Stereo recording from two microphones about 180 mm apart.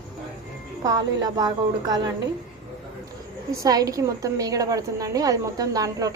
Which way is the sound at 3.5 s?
20° right (ahead or behind).